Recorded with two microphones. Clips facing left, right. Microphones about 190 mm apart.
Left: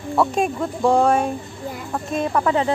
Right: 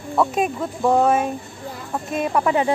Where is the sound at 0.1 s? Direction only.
Centre (ahead or behind).